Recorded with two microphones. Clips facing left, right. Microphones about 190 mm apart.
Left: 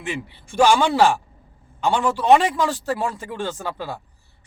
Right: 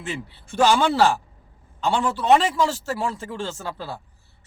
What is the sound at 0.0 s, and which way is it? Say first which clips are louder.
Speech: left 2 dB; 15° left (ahead or behind).